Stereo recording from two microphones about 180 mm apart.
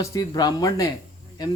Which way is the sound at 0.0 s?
20° left (ahead or behind).